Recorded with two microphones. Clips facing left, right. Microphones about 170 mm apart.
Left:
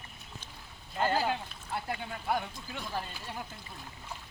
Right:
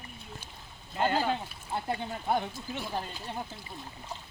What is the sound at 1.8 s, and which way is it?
Speech, 25° right (ahead or behind).